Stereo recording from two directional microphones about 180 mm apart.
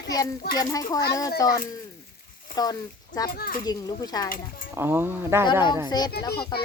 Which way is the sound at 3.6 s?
20° left (ahead or behind).